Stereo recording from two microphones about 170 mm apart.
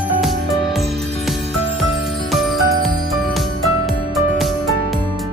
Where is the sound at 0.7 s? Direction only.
Centre (ahead or behind).